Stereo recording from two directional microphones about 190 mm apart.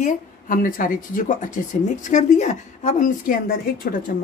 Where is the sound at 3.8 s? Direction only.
55° left (ahead or behind).